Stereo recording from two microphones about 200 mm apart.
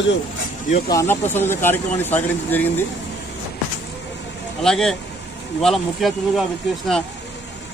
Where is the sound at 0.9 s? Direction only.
15° left (ahead or behind).